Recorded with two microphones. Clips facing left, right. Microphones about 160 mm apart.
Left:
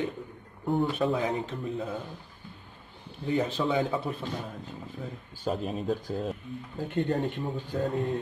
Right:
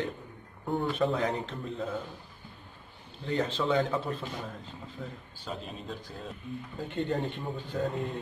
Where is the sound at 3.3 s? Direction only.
10° left (ahead or behind).